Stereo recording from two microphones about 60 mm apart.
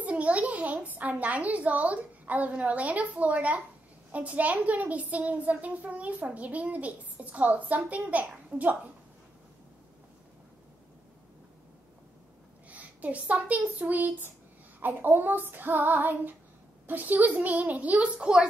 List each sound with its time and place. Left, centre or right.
0.0 s a child's voice: right
12.6 s a woman's voice: right
14.8 s child singing: right
16.8 s a woman's voice: right